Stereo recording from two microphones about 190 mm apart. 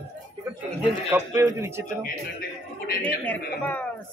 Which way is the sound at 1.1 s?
15° right (ahead or behind).